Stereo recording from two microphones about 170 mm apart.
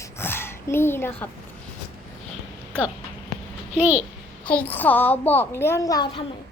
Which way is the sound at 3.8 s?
10° right (ahead or behind).